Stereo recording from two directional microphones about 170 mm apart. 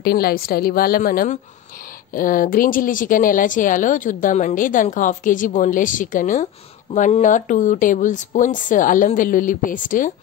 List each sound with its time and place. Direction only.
0.0 s a woman's voice: 65° left (ahead or behind); by 10.1 s 50° left (ahead or behind)